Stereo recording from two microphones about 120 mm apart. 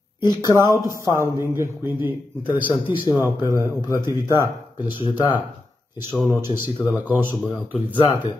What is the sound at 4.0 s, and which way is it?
Speech, 35° left (ahead or behind).